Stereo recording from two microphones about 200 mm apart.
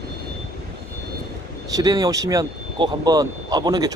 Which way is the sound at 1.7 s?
20° right (ahead or behind).